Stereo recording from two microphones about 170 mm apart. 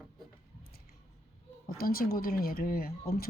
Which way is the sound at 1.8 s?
60° left (ahead or behind).